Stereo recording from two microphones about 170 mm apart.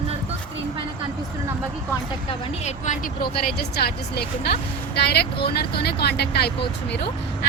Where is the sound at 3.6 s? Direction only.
70° left (ahead or behind).